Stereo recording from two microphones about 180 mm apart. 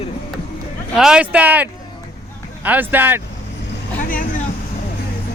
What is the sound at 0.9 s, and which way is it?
Speech, 5° right (ahead or behind).